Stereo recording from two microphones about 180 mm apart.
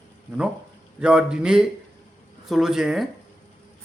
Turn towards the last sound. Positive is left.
turn(degrees=0)  # may be behind; listen again after turning